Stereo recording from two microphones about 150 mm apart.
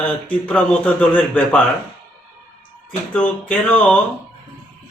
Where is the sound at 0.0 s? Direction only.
10° left (ahead or behind).